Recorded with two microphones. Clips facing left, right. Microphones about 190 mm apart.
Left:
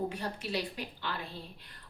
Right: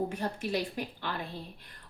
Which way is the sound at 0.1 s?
50° right (ahead or behind).